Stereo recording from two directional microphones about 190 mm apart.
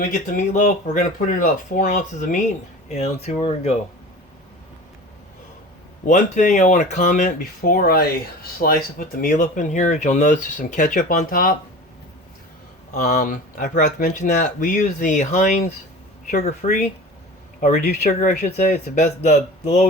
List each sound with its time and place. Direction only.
0.1 s speech: 40° left (ahead or behind)
6.1 s speech: 40° left (ahead or behind)
12.9 s speech: 45° left (ahead or behind)